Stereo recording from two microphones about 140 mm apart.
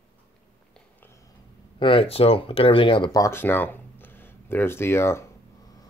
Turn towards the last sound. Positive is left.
turn(degrees=20)  # may be behind; listen again after turning